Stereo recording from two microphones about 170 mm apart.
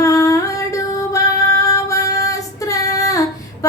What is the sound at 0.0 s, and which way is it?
Singing, 20° left (ahead or behind).